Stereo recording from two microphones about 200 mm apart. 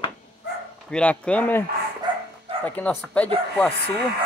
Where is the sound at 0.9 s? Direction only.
5° left (ahead or behind).